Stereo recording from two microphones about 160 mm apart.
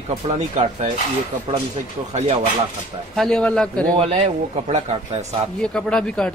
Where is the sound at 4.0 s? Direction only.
35° right (ahead or behind).